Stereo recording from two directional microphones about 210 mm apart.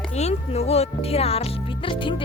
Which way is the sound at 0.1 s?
30° left (ahead or behind).